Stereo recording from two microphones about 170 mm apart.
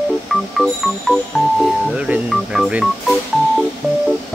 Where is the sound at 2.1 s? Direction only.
5° right (ahead or behind).